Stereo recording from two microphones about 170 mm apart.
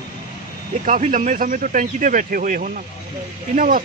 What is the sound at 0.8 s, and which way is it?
Speech, 50° right (ahead or behind).